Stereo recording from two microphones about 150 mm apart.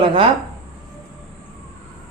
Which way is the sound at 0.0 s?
35° right (ahead or behind).